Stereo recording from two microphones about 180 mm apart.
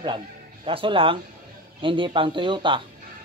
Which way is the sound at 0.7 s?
30° right (ahead or behind).